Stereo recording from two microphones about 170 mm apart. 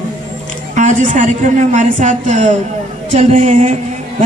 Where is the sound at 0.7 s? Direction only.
45° right (ahead or behind).